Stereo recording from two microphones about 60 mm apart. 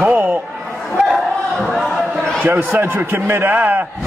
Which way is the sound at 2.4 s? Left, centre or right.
Right.